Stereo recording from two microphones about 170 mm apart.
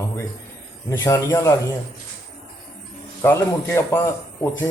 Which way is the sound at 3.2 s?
15° left (ahead or behind).